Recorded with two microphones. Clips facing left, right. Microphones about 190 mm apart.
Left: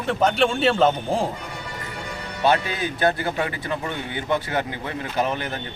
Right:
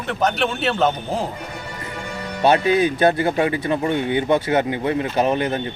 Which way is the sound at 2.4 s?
20° right (ahead or behind).